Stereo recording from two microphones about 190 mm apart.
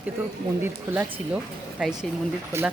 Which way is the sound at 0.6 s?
10° right (ahead or behind).